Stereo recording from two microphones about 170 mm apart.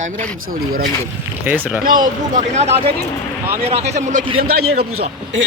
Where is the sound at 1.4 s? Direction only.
10° right (ahead or behind).